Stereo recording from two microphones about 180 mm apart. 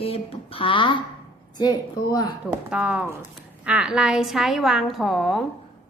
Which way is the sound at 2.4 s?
5° right (ahead or behind).